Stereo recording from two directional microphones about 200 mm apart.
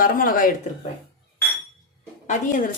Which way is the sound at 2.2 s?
40° left (ahead or behind).